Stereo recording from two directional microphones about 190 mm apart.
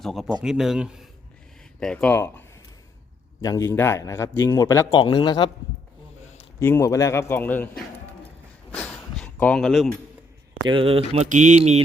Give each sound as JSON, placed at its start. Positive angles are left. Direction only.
{"t": 0.0, "sound": "a man's voice", "side_deg": 0}
{"t": 3.4, "sound": "a man's voice", "side_deg": 15}
{"t": 6.6, "sound": "a man's voice", "side_deg": 15}
{"t": 8.7, "sound": "a sound", "side_deg": 10}
{"t": 10.7, "sound": "speech", "side_deg": -30}